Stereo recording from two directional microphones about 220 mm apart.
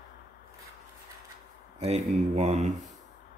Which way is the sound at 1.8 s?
30° right (ahead or behind).